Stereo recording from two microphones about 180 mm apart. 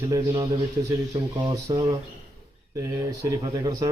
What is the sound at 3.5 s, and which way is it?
Speech, 20° right (ahead or behind).